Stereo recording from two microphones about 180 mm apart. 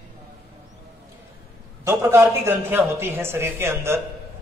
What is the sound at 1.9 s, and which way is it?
A man's voice, 15° right (ahead or behind).